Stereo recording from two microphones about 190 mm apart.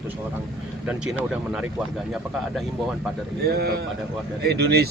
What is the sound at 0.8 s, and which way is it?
Speech, 5° right (ahead or behind).